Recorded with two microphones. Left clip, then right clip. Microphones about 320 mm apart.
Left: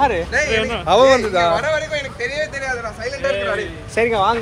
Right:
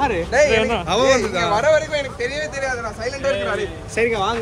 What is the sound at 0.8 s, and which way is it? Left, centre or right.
Speech, centre.